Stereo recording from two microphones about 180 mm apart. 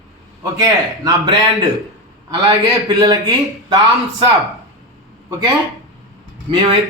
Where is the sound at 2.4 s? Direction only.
25° right (ahead or behind).